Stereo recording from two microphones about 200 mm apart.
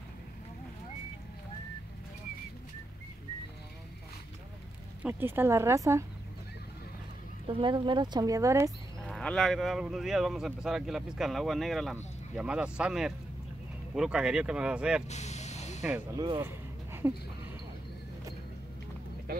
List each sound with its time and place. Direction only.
5.0 s a woman's voice: 10° right (ahead or behind)
7.4 s speech: 25° right (ahead or behind)
9.0 s speech: 5° left (ahead or behind)
15.0 s vehicle: 35° left (ahead or behind)
16.2 s a sound: 15° right (ahead or behind)